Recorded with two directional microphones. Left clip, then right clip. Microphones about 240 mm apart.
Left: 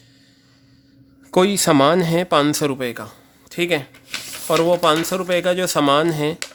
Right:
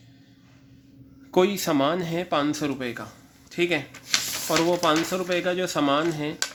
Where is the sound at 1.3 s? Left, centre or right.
Left.